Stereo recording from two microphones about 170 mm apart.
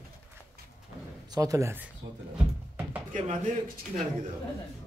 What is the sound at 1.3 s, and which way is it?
Speech, 20° right (ahead or behind).